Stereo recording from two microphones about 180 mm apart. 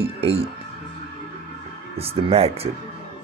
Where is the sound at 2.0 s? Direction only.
35° right (ahead or behind).